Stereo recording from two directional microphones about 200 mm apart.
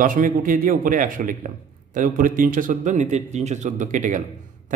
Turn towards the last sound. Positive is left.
turn(degrees=-40)  # may be behind; listen again after turning